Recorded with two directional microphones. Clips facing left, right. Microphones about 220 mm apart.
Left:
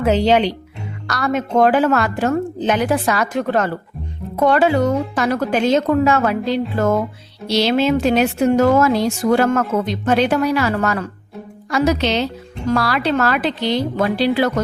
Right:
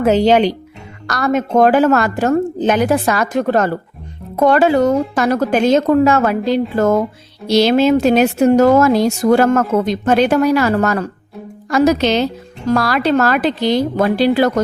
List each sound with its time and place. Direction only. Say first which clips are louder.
0.0 s speech: right 3 dB; 45° right (ahead or behind)